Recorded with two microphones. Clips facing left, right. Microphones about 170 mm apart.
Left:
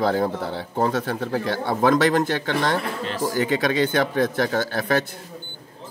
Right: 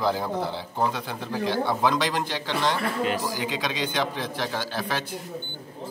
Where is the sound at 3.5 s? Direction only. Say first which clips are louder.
Left 8 dB; 50° left (ahead or behind).